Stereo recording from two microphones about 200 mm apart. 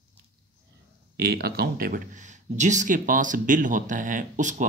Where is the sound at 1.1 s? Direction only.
50° right (ahead or behind).